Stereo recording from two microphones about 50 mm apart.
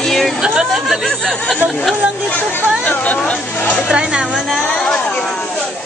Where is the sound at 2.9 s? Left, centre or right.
Left.